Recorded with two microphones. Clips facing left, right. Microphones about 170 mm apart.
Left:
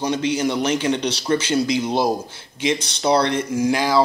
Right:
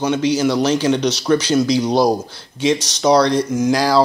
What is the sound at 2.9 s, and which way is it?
Speech, 30° left (ahead or behind).